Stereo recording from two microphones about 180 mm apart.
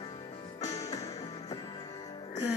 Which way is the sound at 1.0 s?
30° left (ahead or behind).